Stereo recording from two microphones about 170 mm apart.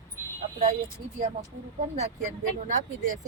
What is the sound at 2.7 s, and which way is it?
Speech, 45° right (ahead or behind).